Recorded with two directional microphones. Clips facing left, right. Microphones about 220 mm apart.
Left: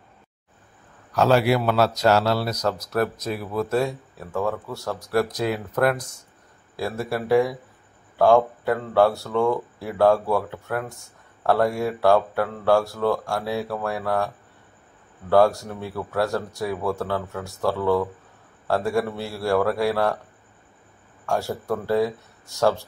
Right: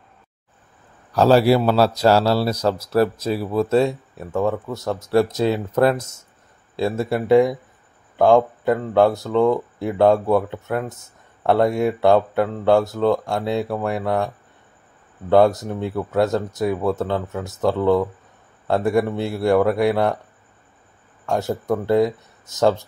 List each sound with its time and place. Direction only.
1.1 s a man's voice: 35° right (ahead or behind)
21.3 s speech: 20° right (ahead or behind)